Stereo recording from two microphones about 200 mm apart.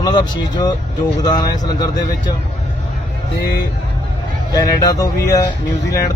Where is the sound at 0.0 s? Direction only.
20° left (ahead or behind).